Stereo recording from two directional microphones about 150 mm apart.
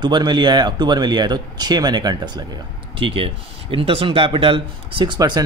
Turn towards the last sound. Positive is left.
turn(degrees=-30)  # may be behind; listen again after turning